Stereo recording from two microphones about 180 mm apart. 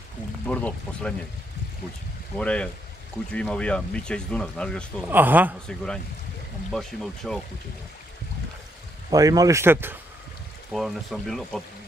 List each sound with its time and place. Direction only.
0.5 s speech: 10° left (ahead or behind)
2.3 s speech: 5° left (ahead or behind)
5.0 s speech: 10° right (ahead or behind)
6.7 s speech: 5° left (ahead or behind)
9.1 s speech: 20° right (ahead or behind)
10.7 s speech: centre (ahead or behind)